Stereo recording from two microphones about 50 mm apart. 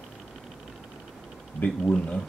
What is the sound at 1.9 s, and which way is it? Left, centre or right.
Speech, centre.